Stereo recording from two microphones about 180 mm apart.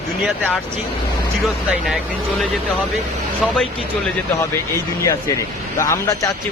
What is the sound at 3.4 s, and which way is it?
Speech, 5° left (ahead or behind).